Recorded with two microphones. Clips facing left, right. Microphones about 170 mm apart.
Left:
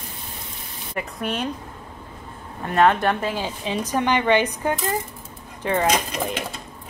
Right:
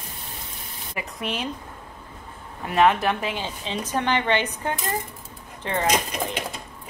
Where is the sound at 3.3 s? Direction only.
10° left (ahead or behind).